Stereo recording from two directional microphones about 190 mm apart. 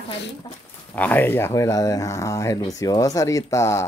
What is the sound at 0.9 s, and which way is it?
Speech, 10° left (ahead or behind).